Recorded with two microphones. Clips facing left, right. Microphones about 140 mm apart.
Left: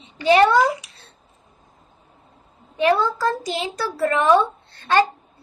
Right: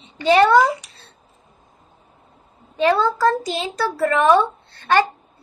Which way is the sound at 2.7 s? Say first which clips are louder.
Right 1 dB; 20° left (ahead or behind).